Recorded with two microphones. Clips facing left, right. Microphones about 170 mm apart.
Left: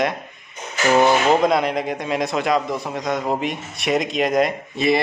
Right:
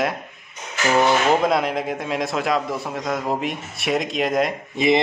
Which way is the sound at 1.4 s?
Centre (ahead or behind).